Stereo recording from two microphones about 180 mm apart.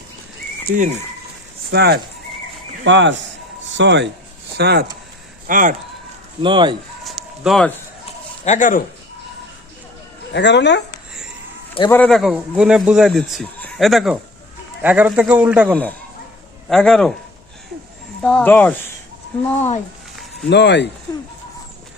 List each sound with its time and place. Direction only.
1.7 s speech: 65° right (ahead or behind)
2.8 s speech: 90° right
3.7 s speech: 80° right
5.5 s speech: 45° right (ahead or behind)
6.4 s speech: 25° right (ahead or behind)
7.0 s a sound: centre (ahead or behind)
8.4 s speech: 45° left (ahead or behind)
10.3 s speech: 75° left (ahead or behind)
11.9 s speech: 5° left (ahead or behind)
15.7 s speech: 10° left (ahead or behind)
18.2 s speech: 5° left (ahead or behind)
19.4 s speech: 40° left (ahead or behind)
20.5 s speech: 70° left (ahead or behind)